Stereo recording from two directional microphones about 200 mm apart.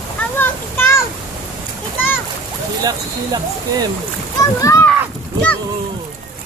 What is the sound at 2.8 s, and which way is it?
Speech, 20° right (ahead or behind).